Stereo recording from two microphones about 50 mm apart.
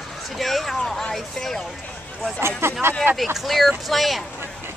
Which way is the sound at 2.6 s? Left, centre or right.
Right.